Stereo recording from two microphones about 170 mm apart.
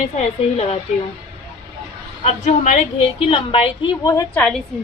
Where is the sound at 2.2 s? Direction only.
45° left (ahead or behind); by 4.4 s 20° left (ahead or behind).